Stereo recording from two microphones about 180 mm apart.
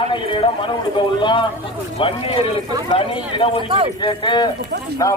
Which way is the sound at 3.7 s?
30° right (ahead or behind).